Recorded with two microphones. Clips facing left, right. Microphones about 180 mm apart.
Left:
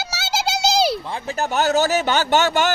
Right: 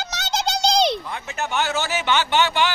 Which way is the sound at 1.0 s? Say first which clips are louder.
Left 4 dB; 30° left (ahead or behind).